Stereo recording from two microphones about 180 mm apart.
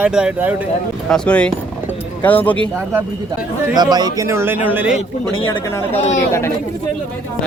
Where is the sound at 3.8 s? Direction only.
20° right (ahead or behind).